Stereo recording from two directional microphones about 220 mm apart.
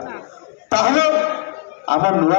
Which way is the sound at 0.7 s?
55° left (ahead or behind).